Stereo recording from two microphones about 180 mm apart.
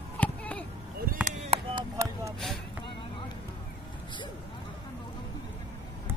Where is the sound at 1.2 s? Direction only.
40° right (ahead or behind).